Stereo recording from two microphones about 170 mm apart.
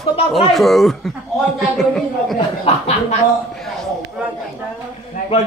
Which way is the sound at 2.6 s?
35° left (ahead or behind).